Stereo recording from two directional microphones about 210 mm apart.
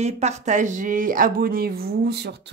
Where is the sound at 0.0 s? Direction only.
30° right (ahead or behind).